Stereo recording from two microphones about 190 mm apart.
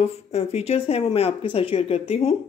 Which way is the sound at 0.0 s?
35° left (ahead or behind).